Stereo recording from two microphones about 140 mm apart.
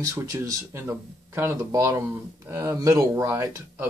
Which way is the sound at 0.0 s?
25° right (ahead or behind).